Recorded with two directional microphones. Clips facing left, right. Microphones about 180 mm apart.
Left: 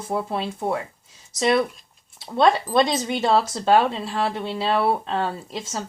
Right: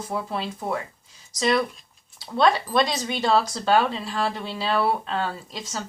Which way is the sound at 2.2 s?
25° left (ahead or behind).